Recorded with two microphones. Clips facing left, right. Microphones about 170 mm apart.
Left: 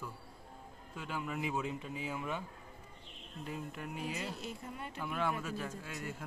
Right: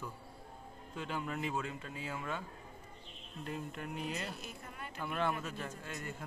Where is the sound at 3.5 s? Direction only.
Centre (ahead or behind).